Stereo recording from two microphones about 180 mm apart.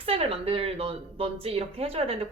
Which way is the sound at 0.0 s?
30° right (ahead or behind).